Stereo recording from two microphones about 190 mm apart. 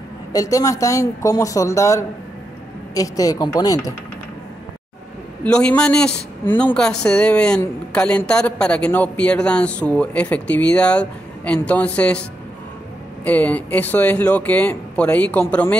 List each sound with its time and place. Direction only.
0.3 s a man's voice: 20° left (ahead or behind)
5.4 s a man's voice: 5° left (ahead or behind)